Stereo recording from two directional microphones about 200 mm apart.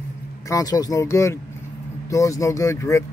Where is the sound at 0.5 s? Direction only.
20° left (ahead or behind).